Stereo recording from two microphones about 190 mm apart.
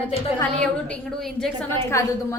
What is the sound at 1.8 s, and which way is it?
Speech, 15° left (ahead or behind).